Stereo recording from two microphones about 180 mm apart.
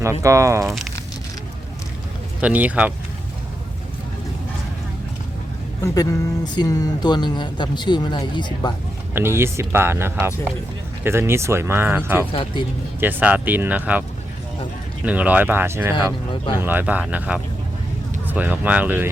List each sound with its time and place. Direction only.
0.0 s speech: 15° right (ahead or behind)
0.6 s speech: centre (ahead or behind)
2.4 s speech: 10° right (ahead or behind)
5.8 s speech: 20° left (ahead or behind)
9.1 s speech: 15° right (ahead or behind)
12.3 s speech: 30° left (ahead or behind)
13.0 s speech: 10° right (ahead or behind)
15.0 s speech: 10° right (ahead or behind)